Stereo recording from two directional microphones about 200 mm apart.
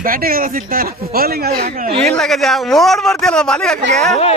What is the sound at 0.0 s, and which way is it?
Speech, 45° right (ahead or behind).